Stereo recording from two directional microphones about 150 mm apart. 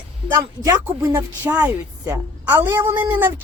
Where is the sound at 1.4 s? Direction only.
10° right (ahead or behind).